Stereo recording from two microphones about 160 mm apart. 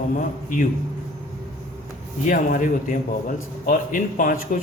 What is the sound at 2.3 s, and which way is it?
Speech, 55° left (ahead or behind).